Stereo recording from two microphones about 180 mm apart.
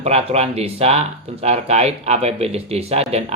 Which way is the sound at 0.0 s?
35° right (ahead or behind).